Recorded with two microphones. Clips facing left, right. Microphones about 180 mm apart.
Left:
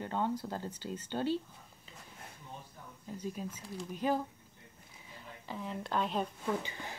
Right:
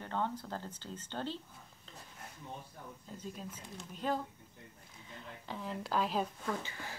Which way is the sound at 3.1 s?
15° left (ahead or behind).